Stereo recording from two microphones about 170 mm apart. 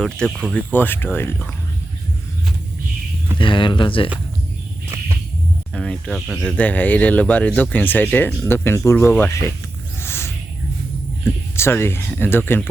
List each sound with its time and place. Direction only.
0.0 s speech: centre (ahead or behind)
3.3 s speech: 30° left (ahead or behind)
5.7 s speech: 5° left (ahead or behind)
6.6 s speech: 10° left (ahead or behind)
10.0 s a sound: 15° left (ahead or behind)
11.5 s speech: 15° left (ahead or behind)